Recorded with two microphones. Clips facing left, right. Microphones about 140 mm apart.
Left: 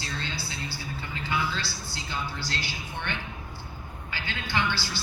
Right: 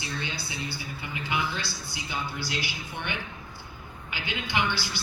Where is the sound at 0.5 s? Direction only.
15° right (ahead or behind).